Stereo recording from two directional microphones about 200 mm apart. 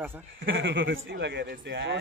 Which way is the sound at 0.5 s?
65° right (ahead or behind).